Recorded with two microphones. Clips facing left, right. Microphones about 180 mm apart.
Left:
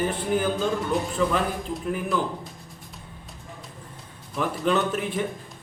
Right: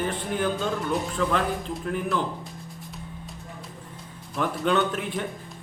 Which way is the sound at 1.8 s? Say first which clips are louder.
Even; 5° left (ahead or behind).